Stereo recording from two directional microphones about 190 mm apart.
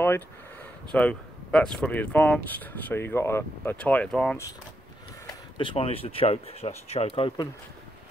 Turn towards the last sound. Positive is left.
turn(degrees=25)  # may be behind; listen again after turning